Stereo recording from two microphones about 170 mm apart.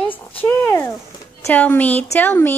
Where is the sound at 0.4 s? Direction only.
10° left (ahead or behind).